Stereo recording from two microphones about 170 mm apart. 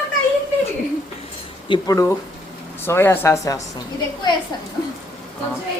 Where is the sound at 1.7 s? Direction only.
20° left (ahead or behind).